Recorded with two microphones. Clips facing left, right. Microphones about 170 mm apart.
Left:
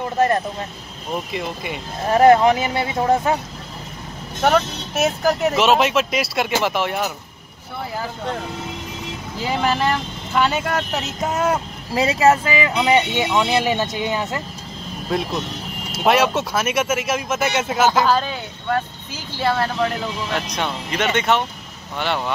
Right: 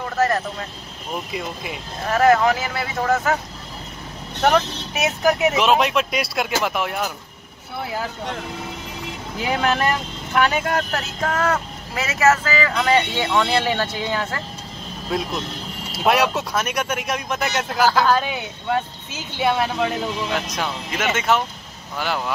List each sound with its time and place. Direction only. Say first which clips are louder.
0.0 s speech: left 2 dB; 25° left (ahead or behind)
1.3 s speech: left 2 dB; centre (ahead or behind)
2.0 s speech: left 4 dB; 25° left (ahead or behind)
4.4 s speech: left 1 dB; centre (ahead or behind)
9.4 s speech: even; centre (ahead or behind)
11.3 s speech: left 2 dB; 25° left (ahead or behind)
15.0 s speech: left 2 dB; centre (ahead or behind)
18.1 s speech: even; 15° right (ahead or behind)
20.3 s speech: left 1 dB; centre (ahead or behind)